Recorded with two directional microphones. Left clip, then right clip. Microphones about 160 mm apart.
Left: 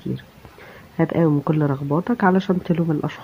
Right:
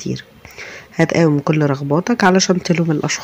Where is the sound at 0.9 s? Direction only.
30° right (ahead or behind).